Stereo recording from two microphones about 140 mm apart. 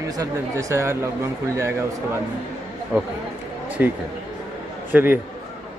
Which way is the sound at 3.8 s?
10° right (ahead or behind).